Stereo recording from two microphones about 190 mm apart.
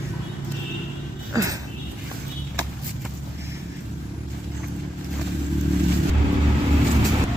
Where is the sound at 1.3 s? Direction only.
15° right (ahead or behind).